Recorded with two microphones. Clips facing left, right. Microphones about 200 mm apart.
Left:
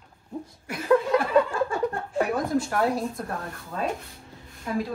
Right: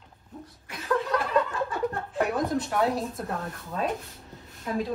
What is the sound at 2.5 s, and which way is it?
Speech, centre (ahead or behind).